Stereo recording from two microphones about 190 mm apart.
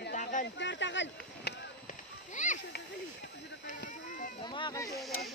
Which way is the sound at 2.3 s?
40° left (ahead or behind).